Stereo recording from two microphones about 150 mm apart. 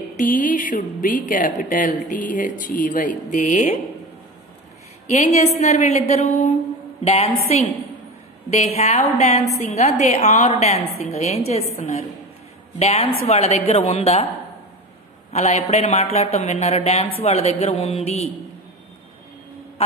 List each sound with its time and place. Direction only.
0.1 s a woman's voice: 60° left (ahead or behind)
5.0 s a woman's voice: 50° left (ahead or behind)
15.3 s a woman's voice: 45° left (ahead or behind)